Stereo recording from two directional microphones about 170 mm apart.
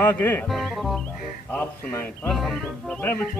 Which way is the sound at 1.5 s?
15° left (ahead or behind).